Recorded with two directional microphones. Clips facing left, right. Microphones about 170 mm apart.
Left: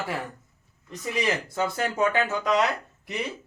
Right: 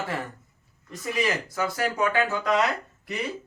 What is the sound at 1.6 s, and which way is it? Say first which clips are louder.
Speech: left 1 dB; 25° left (ahead or behind).